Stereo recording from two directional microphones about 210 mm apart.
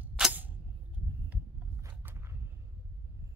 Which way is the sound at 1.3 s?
15° right (ahead or behind).